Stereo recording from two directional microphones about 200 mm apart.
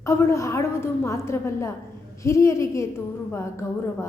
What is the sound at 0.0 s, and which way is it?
A woman's voice, 15° left (ahead or behind).